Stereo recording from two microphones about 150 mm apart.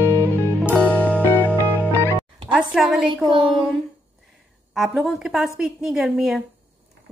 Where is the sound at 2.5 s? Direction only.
5° right (ahead or behind).